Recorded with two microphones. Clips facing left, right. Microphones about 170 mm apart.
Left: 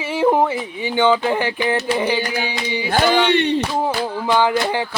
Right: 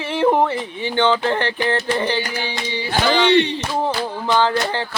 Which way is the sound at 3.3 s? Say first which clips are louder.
Right 1 dB; 55° left (ahead or behind).